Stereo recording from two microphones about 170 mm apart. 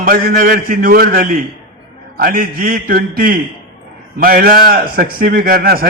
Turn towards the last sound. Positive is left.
turn(degrees=-60)  # may be behind; listen again after turning